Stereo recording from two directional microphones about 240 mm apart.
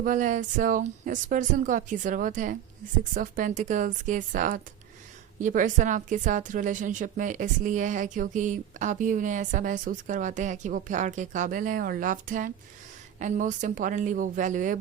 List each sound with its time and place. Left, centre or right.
0.0 s a woman's voice: right